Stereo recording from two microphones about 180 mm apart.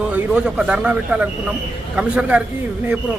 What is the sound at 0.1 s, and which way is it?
A man's voice, 5° right (ahead or behind).